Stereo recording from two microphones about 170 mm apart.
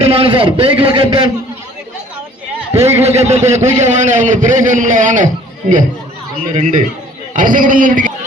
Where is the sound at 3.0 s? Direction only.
40° right (ahead or behind).